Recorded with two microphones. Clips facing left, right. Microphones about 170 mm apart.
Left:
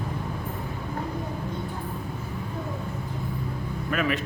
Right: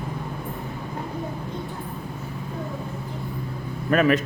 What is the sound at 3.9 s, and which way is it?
Speech, 40° right (ahead or behind).